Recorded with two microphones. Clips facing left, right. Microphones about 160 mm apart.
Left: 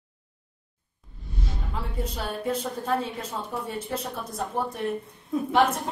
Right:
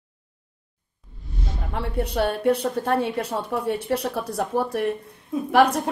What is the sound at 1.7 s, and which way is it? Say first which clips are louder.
A woman's voice: right 7 dB; 65° right (ahead or behind).